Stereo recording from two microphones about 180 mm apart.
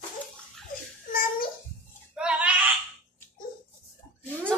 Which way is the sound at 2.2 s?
5° right (ahead or behind).